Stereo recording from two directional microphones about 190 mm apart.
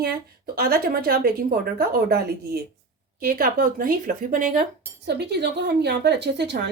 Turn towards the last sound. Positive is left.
turn(degrees=-60)  # may be behind; listen again after turning